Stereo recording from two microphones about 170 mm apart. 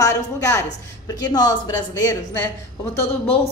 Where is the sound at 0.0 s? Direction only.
20° left (ahead or behind).